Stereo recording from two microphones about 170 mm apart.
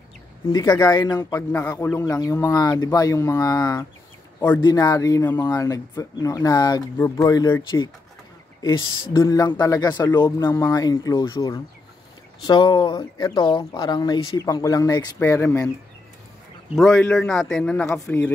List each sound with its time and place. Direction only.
0.5 s speech: 25° left (ahead or behind)
9.1 s speech: 20° left (ahead or behind)
16.7 s a man's voice: 5° left (ahead or behind)